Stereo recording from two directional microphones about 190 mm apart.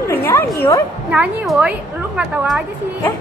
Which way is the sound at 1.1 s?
5° right (ahead or behind).